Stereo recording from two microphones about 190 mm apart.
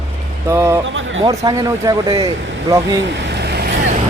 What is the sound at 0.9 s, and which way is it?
Speech, 90° right.